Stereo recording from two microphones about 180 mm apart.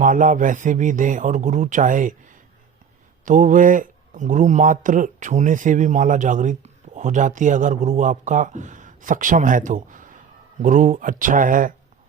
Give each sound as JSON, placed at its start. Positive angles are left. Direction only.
{"t": 0.0, "sound": "speech", "side_deg": -45}
{"t": 3.2, "sound": "speech", "side_deg": -45}